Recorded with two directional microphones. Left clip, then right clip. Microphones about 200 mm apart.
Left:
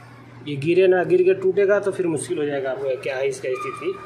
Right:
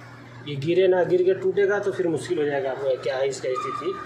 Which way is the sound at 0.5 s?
20° left (ahead or behind).